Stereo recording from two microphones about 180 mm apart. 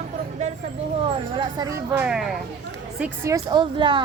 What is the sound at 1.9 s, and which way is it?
Speech, 5° right (ahead or behind).